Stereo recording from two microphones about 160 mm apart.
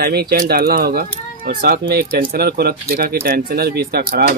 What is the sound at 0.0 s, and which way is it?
Speech, 75° right (ahead or behind).